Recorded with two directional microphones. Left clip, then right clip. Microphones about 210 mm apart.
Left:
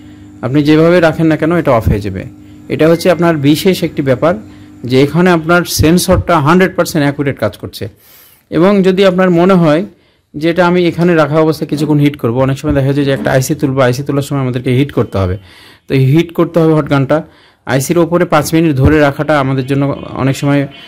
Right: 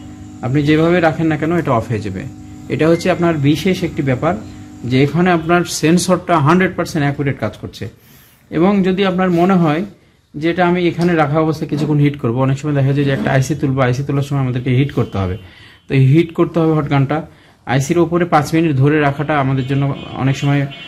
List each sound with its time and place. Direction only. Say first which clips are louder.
0.4 s speech: left 5 dB; 55° left (ahead or behind)